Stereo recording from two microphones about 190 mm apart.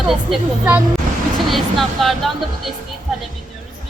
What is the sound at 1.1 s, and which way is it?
Vehicle, 40° right (ahead or behind).